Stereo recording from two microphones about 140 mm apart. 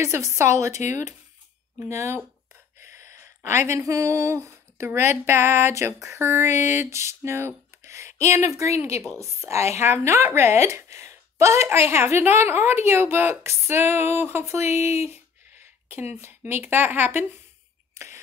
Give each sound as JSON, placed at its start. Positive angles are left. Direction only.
{"t": 0.0, "sound": "a woman's voice", "side_deg": -20}
{"t": 1.8, "sound": "a woman's voice", "side_deg": -20}
{"t": 17.9, "sound": "a sound", "side_deg": -20}